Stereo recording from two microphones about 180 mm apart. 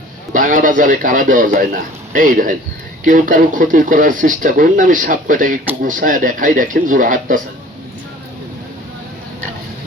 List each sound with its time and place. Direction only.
0.3 s speech: 45° right (ahead or behind)